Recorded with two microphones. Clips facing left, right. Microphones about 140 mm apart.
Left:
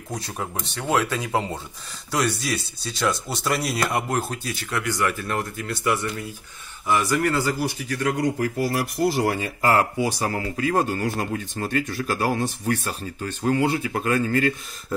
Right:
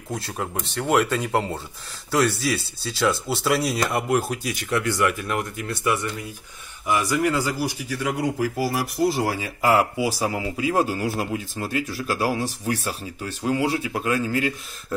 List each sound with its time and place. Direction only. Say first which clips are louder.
0.1 s speech: right 2 dB; 5° right (ahead or behind)
4.1 s speech: right 3 dB; 10° right (ahead or behind)
4.6 s speech: right 3 dB; 25° right (ahead or behind)
6.9 s speech: even; 10° right (ahead or behind)